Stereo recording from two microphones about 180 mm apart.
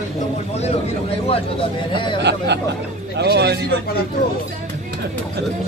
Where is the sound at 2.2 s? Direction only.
70° right (ahead or behind).